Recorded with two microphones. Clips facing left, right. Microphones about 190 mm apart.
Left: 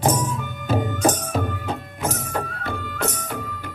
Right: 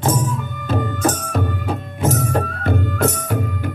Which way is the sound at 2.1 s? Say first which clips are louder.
Right 8 dB; 45° right (ahead or behind).